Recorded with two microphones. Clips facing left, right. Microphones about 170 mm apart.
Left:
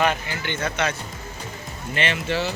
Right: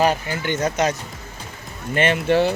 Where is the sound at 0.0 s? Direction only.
40° right (ahead or behind).